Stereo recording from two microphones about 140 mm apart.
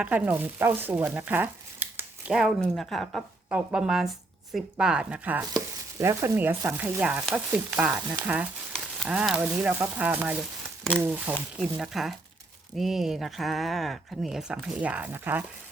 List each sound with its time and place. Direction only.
0.0 s speech: 10° right (ahead or behind)
2.6 s speech: centre (ahead or behind)
9.0 s speech: 5° right (ahead or behind)
11.5 s speech: centre (ahead or behind)